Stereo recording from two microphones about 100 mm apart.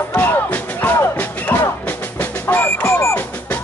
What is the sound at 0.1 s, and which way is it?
Music, 15° left (ahead or behind).